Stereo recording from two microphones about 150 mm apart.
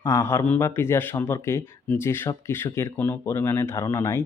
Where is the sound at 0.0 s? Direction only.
15° left (ahead or behind).